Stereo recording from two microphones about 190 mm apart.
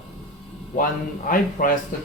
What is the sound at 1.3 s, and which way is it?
Speech, 50° left (ahead or behind).